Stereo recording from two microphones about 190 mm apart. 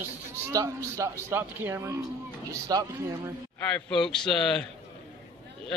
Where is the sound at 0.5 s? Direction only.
15° right (ahead or behind).